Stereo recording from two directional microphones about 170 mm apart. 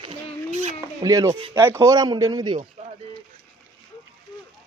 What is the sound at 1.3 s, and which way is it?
Speech, 35° right (ahead or behind).